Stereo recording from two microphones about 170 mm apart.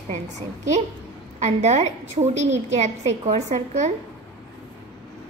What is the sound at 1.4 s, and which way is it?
A woman's voice, 40° right (ahead or behind).